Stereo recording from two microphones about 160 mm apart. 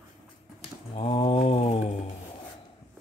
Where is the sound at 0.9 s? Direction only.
35° left (ahead or behind).